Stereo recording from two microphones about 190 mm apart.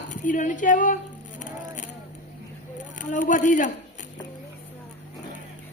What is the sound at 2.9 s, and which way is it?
Speech, 40° left (ahead or behind).